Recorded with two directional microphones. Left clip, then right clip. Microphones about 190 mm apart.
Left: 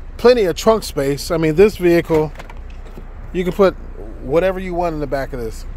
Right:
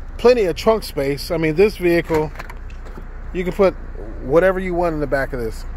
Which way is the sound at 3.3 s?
30° left (ahead or behind).